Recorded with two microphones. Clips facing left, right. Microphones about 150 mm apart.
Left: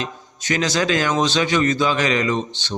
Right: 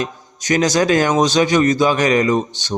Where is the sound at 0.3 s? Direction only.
40° right (ahead or behind).